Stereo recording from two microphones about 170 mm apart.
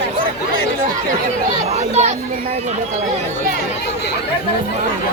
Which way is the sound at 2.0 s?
40° right (ahead or behind).